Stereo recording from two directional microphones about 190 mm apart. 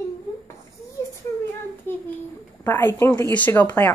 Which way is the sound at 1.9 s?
10° left (ahead or behind).